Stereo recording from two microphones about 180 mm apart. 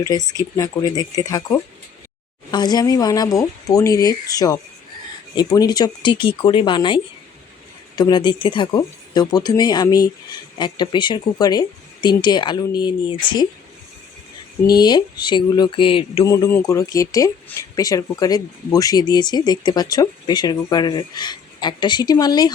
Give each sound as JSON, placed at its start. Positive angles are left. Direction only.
{"t": 0.0, "sound": "speech", "side_deg": 20}
{"t": 14.7, "sound": "speech", "side_deg": 25}
{"t": 16.2, "sound": "speech", "side_deg": 15}